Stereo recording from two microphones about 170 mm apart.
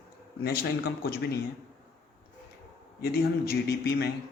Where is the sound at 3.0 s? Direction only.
65° left (ahead or behind).